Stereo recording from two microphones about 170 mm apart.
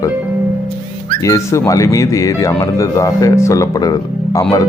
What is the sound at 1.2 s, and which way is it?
Speech, 20° left (ahead or behind).